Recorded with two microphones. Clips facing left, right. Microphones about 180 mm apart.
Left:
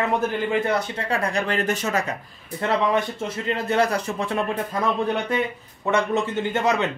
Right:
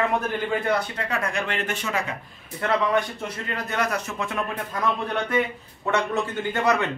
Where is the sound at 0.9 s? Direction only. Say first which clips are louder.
Left 3 dB; 30° left (ahead or behind).